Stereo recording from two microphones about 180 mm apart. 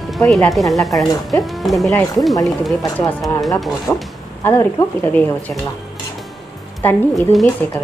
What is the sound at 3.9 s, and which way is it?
Speech, 15° left (ahead or behind).